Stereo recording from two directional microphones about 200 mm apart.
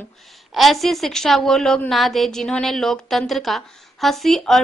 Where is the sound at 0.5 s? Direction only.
Centre (ahead or behind).